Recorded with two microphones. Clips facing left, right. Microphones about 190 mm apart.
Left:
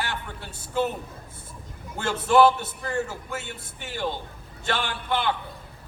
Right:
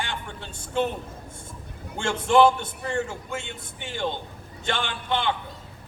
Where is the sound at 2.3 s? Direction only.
5° left (ahead or behind).